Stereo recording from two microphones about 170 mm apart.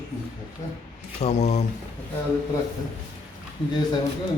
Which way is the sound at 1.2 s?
40° left (ahead or behind).